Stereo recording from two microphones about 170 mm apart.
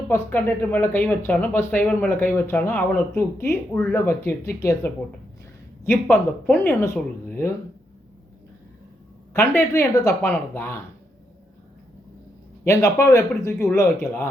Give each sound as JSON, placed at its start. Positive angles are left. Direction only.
{"t": 0.1, "sound": "speech", "side_deg": 15}
{"t": 5.8, "sound": "speech", "side_deg": 15}
{"t": 9.3, "sound": "speech", "side_deg": 15}
{"t": 12.6, "sound": "speech", "side_deg": 15}